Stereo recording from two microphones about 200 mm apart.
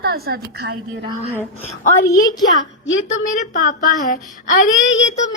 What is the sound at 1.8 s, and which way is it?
Speech, 50° left (ahead or behind).